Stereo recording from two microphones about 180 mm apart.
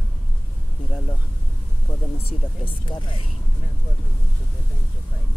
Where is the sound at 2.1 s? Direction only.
30° left (ahead or behind).